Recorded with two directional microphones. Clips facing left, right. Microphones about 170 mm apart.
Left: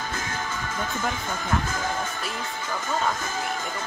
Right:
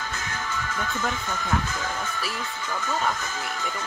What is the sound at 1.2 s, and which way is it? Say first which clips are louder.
Speech: left 1 dB; 50° left (ahead or behind).